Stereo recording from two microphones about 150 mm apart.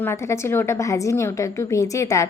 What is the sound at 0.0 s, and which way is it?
A woman's voice, 15° left (ahead or behind).